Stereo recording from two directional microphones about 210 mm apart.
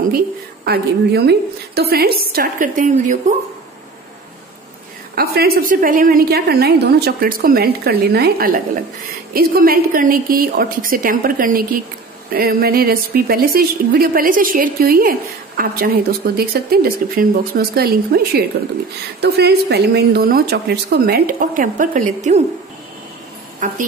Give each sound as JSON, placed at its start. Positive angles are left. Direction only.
{"t": 0.7, "sound": "a woman's voice", "side_deg": -50}
{"t": 5.1, "sound": "a woman's voice", "side_deg": -45}